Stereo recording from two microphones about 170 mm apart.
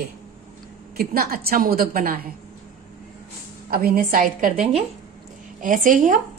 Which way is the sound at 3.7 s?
60° right (ahead or behind).